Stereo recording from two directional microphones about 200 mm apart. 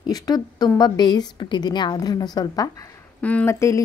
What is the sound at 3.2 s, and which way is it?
Speech, 5° left (ahead or behind).